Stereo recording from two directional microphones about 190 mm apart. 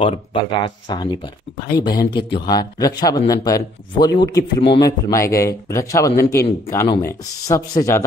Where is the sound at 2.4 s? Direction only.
20° left (ahead or behind).